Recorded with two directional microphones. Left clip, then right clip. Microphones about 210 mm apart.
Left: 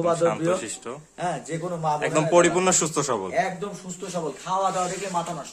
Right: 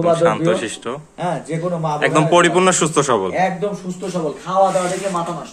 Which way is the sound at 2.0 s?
10° left (ahead or behind).